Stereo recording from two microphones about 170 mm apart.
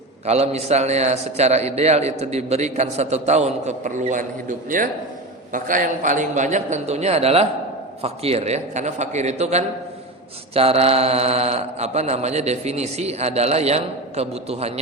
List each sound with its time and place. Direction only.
0.3 s a man's voice: 40° right (ahead or behind)